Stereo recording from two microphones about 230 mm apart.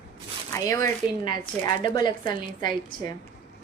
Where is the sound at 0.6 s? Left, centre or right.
Centre.